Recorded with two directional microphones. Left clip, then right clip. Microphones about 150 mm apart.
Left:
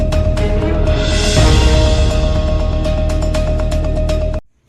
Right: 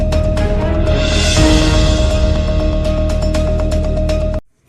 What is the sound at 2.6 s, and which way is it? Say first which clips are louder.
Music: right 2 dB; centre (ahead or behind).